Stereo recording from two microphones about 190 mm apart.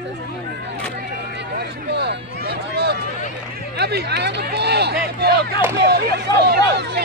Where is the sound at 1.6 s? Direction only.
60° right (ahead or behind).